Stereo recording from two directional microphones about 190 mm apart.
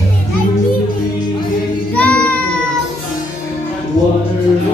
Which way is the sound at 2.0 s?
5° left (ahead or behind).